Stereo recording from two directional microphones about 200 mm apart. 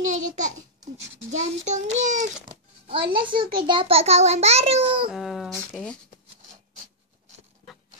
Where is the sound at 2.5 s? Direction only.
25° right (ahead or behind).